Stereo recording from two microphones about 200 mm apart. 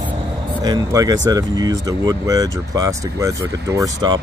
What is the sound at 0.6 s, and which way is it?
Speech, 20° right (ahead or behind).